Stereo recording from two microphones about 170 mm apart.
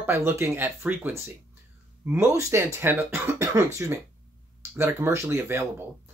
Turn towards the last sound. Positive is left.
turn(degrees=-15)  # may be behind; listen again after turning